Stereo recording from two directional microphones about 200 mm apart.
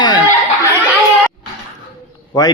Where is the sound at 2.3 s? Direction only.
20° left (ahead or behind).